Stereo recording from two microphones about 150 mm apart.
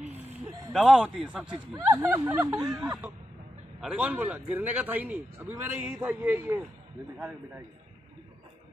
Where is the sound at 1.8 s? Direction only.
20° right (ahead or behind).